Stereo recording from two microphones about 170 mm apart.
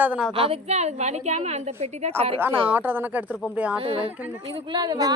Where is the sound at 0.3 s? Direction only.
35° right (ahead or behind).